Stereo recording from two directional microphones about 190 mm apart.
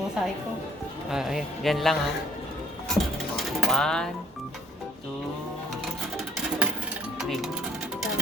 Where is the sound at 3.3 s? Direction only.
Centre (ahead or behind).